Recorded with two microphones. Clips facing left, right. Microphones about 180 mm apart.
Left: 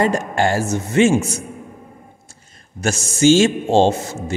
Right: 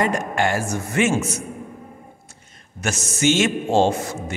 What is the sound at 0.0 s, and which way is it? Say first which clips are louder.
A man's voice: left 3 dB; 30° left (ahead or behind).